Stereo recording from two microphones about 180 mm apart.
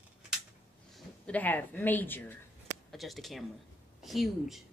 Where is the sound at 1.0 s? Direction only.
5° left (ahead or behind).